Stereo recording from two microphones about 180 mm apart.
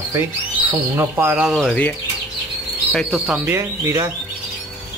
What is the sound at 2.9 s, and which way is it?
Speech, centre (ahead or behind).